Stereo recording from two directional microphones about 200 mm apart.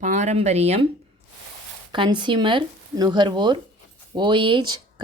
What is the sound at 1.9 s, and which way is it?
A woman's voice, 25° right (ahead or behind).